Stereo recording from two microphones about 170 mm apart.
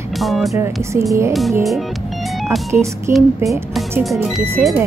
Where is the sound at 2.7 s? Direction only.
15° right (ahead or behind).